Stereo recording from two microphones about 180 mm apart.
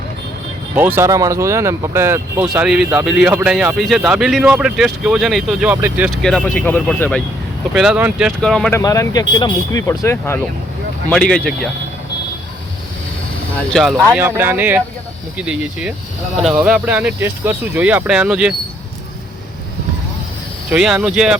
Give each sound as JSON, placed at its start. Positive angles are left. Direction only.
{"t": 0.8, "sound": "speech", "side_deg": -10}
{"t": 6.2, "sound": "speech", "side_deg": 5}
{"t": 7.7, "sound": "speech", "side_deg": -5}
{"t": 8.4, "sound": "speech", "side_deg": 5}
{"t": 8.7, "sound": "speech", "side_deg": 20}
{"t": 13.6, "sound": "speech", "side_deg": 0}
{"t": 14.1, "sound": "speech", "side_deg": -10}
{"t": 20.7, "sound": "speech", "side_deg": -5}